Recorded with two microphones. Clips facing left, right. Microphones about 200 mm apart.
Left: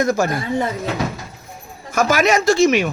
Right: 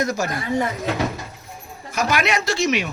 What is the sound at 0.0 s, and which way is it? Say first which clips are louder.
Speech: left 5 dB; 55° left (ahead or behind).